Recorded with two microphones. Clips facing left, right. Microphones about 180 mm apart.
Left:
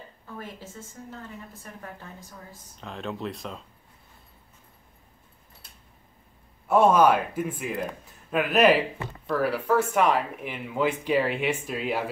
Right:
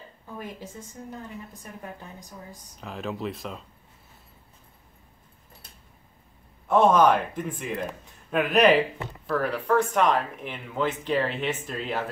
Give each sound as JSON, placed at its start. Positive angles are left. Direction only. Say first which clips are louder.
{"t": 0.4, "sound": "a woman's voice", "louder": "right 2 dB", "side_deg": -15}
{"t": 2.8, "sound": "speech", "louder": "right 1 dB", "side_deg": -5}
{"t": 6.7, "sound": "speech", "louder": "even", "side_deg": 10}